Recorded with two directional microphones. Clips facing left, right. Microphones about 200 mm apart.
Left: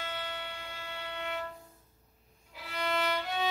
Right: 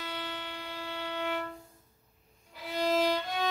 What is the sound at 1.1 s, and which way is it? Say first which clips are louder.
Music: right 4 dB; 75° right (ahead or behind).